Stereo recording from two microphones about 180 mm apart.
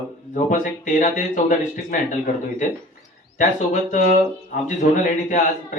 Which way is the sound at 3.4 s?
45° left (ahead or behind).